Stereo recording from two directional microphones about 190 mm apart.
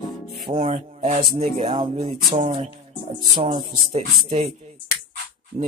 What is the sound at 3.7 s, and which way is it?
Speech, 40° right (ahead or behind).